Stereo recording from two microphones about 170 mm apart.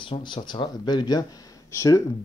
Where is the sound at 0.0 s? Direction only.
30° left (ahead or behind).